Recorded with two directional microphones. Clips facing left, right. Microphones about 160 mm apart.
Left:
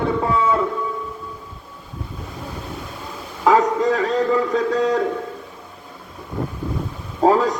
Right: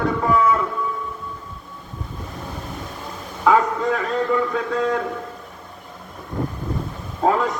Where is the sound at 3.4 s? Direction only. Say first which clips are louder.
Left 2 dB; 35° left (ahead or behind).